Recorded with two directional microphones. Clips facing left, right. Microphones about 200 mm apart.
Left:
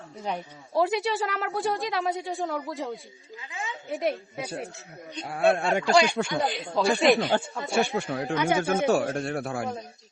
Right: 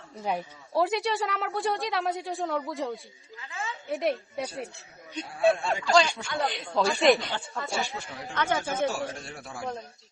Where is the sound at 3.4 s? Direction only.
15° left (ahead or behind).